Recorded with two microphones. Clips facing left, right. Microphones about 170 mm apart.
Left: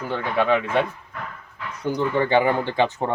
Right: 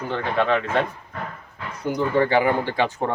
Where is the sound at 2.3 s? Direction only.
25° left (ahead or behind).